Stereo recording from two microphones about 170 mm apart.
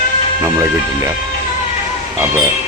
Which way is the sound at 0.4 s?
15° right (ahead or behind).